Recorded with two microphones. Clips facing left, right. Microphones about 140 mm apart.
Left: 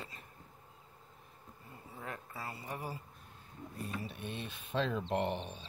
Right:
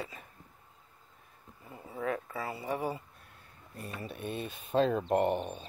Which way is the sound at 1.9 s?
90° right.